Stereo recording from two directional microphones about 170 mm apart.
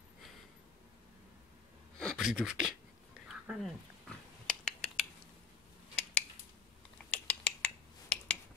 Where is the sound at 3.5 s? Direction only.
Centre (ahead or behind).